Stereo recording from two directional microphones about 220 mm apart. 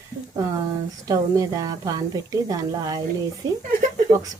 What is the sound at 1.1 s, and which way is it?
A woman's voice, 15° right (ahead or behind).